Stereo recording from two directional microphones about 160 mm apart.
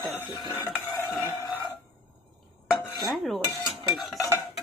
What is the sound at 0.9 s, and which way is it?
Dishes, centre (ahead or behind).